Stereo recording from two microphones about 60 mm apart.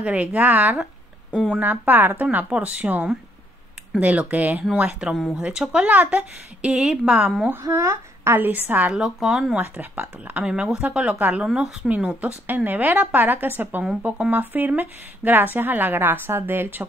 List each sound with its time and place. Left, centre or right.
0.0 s speech: right
7.6 s speech: right
8.4 s a woman's voice: right
8.8 s speech: centre
9.6 s speech: right
10.5 s speech: centre
11.4 s speech: centre
11.9 s a woman's voice: right